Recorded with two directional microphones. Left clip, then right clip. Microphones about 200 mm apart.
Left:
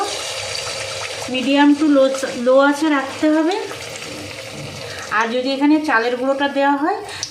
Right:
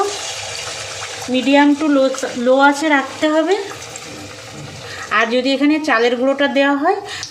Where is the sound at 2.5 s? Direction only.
35° right (ahead or behind).